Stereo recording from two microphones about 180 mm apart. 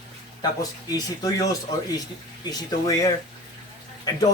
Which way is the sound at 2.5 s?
20° left (ahead or behind).